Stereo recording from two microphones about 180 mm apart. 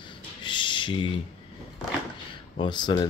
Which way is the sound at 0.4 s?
25° left (ahead or behind).